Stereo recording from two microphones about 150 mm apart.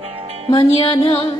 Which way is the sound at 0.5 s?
35° left (ahead or behind).